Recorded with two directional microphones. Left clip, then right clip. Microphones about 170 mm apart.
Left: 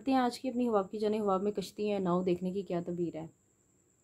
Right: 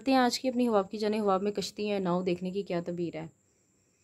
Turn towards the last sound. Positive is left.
turn(degrees=-5)  # may be behind; listen again after turning